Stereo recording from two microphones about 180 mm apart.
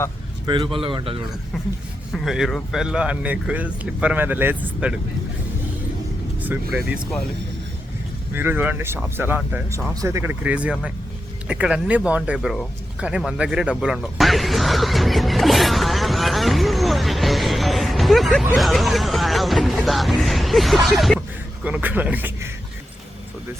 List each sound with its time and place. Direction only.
0.4 s speech: 25° right (ahead or behind)
1.5 s speech: centre (ahead or behind)
6.4 s speech: 10° right (ahead or behind)
8.3 s speech: 10° right (ahead or behind)